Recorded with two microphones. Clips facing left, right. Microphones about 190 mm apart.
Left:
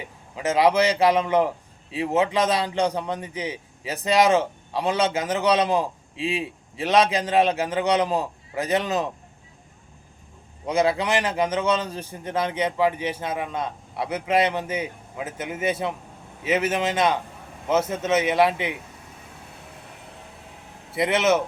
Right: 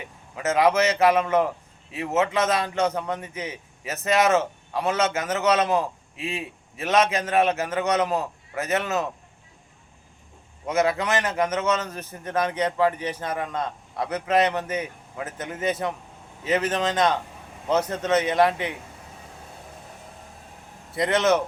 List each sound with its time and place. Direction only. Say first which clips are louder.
0.3 s a man's voice: left 1 dB; 15° left (ahead or behind)
10.9 s a man's voice: left 1 dB; 10° left (ahead or behind)
12.2 s speech: right 1 dB; 25° left (ahead or behind)
12.5 s a man's voice: left 1 dB; 10° left (ahead or behind)
20.9 s a man's voice: even; 10° left (ahead or behind)